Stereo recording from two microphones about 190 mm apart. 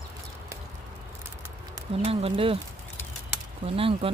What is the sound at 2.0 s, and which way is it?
Speech, 30° right (ahead or behind).